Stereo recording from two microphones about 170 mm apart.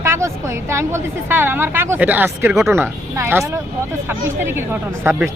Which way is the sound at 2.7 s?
15° right (ahead or behind).